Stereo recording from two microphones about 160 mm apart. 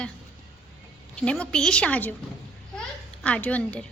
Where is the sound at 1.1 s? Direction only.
5° left (ahead or behind).